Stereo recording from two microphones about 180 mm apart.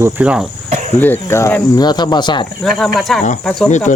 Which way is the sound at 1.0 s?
10° left (ahead or behind).